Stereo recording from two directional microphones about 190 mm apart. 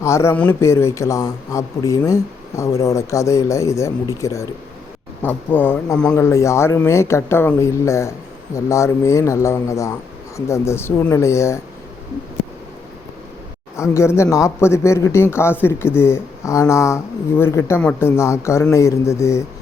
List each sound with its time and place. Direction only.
0.0 s speech: 15° left (ahead or behind)
13.7 s speech: 15° left (ahead or behind)